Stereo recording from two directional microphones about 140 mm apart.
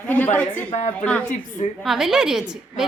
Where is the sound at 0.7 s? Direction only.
55° left (ahead or behind).